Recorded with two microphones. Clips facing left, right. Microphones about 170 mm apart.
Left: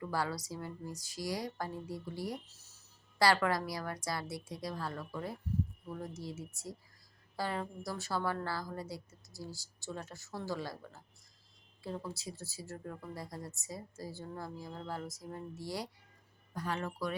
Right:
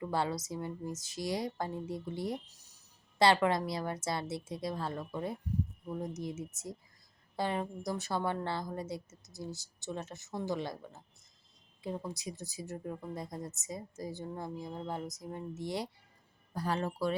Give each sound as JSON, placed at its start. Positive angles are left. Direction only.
{"t": 0.0, "sound": "speech", "side_deg": -20}
{"t": 16.6, "sound": "speech", "side_deg": -30}